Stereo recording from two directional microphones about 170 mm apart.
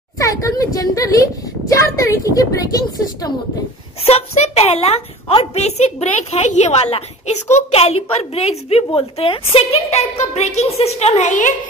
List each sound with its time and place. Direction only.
0.2 s a woman's voice: 20° left (ahead or behind)
4.1 s a woman's voice: 35° left (ahead or behind)